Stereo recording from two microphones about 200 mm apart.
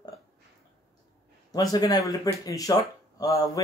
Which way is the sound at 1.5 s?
20° left (ahead or behind).